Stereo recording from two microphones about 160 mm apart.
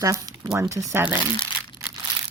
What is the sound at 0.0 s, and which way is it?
Speech, 20° right (ahead or behind).